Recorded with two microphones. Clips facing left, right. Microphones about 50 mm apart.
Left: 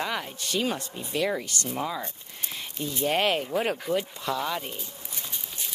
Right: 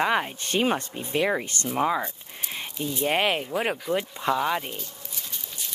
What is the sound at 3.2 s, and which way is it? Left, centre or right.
Speech, centre.